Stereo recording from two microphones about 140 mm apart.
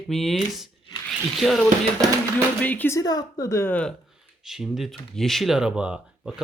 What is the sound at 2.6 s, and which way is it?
Speech, 10° left (ahead or behind).